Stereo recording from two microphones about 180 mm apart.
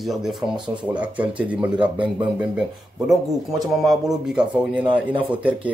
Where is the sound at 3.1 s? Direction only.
Centre (ahead or behind).